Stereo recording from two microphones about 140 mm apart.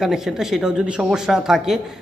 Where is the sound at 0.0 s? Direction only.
5° right (ahead or behind).